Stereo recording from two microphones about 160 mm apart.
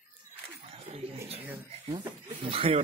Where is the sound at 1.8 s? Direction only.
30° right (ahead or behind).